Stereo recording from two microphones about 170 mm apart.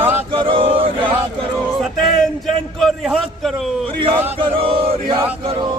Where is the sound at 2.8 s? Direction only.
Centre (ahead or behind).